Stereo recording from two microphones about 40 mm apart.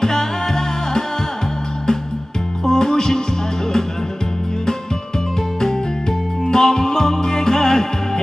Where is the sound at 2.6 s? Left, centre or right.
Centre.